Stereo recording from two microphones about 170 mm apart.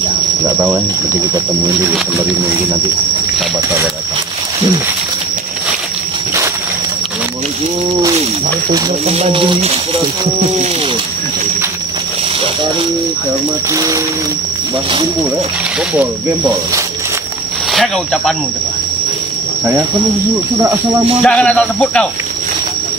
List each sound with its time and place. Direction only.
9.0 s speech: 35° right (ahead or behind)
13.7 s speech: 20° right (ahead or behind)
17.7 s speech: centre (ahead or behind)
21.2 s speech: 5° left (ahead or behind)